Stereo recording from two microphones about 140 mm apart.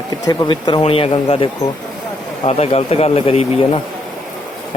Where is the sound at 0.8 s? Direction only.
40° left (ahead or behind).